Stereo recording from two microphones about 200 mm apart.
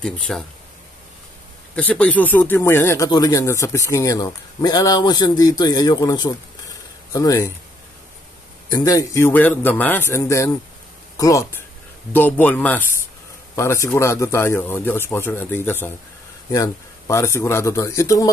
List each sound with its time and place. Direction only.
0.3 s speech: 10° left (ahead or behind)
1.8 s speech: 5° left (ahead or behind)
8.7 s speech: 15° left (ahead or behind)